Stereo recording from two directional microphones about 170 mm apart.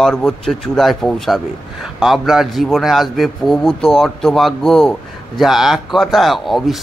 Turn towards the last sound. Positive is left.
turn(degrees=0)  # may be behind; listen again after turning